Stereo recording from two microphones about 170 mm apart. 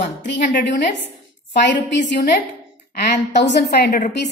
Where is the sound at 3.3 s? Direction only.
85° left.